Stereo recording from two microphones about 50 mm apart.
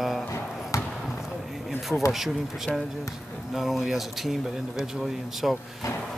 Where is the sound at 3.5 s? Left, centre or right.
Centre.